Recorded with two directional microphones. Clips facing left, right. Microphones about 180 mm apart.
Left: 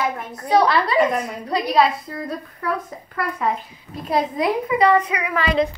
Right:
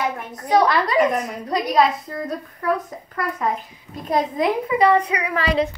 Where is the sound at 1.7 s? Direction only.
45° right (ahead or behind).